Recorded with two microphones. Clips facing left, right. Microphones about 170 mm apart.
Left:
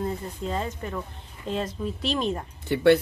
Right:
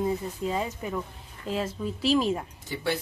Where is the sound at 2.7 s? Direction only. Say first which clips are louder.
Left 11 dB; 65° left (ahead or behind).